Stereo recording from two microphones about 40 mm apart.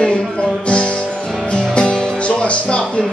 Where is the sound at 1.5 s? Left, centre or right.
Left.